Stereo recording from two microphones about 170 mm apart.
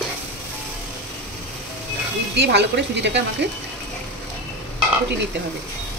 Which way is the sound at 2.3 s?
80° right.